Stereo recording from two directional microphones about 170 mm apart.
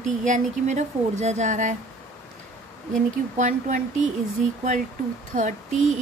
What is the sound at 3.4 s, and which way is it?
Speech, 50° right (ahead or behind).